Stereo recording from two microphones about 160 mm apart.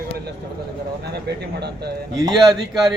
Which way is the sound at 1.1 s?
90° right.